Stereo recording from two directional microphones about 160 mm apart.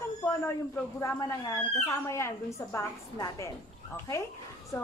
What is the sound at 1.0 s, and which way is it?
A woman's voice, 20° left (ahead or behind).